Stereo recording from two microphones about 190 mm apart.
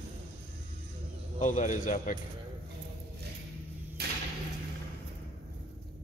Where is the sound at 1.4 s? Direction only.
40° left (ahead or behind).